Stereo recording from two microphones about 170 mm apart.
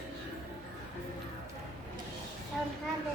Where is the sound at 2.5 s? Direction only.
Centre (ahead or behind).